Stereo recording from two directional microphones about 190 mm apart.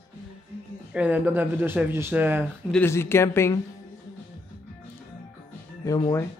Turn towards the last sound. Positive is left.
turn(degrees=20)  # may be behind; listen again after turning